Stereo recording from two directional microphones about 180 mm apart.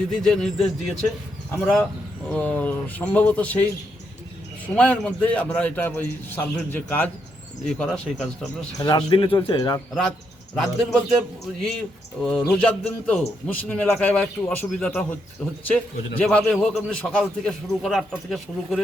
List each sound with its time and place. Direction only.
0.2 s a man's voice: centre (ahead or behind)
4.7 s a man's voice: 5° left (ahead or behind)
8.8 s speech: 25° left (ahead or behind)
9.9 s a man's voice: 5° left (ahead or behind)
12.2 s a man's voice: 5° left (ahead or behind)